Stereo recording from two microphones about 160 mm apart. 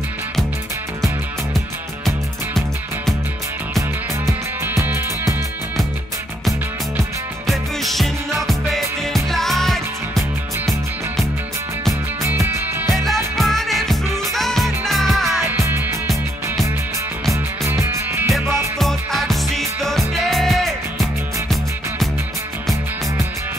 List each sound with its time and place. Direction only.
4.3 s music: 15° right (ahead or behind)
7.4 s music: centre (ahead or behind)
12.2 s music: 15° right (ahead or behind)
12.9 s music: centre (ahead or behind)
15.4 s music: 15° right (ahead or behind)
17.6 s music: 20° right (ahead or behind)
18.8 s music: centre (ahead or behind)